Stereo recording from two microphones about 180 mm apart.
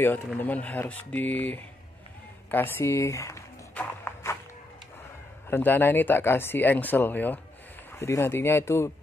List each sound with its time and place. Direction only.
0.0 s speech: 10° left (ahead or behind)
2.5 s walk: 10° left (ahead or behind)
5.5 s speech: 10° left (ahead or behind)